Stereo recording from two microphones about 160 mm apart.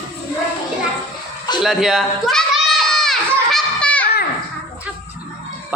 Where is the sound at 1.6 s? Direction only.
Centre (ahead or behind).